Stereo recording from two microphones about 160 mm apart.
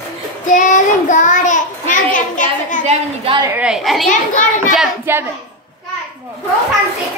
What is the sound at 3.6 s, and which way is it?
Speech, 5° right (ahead or behind).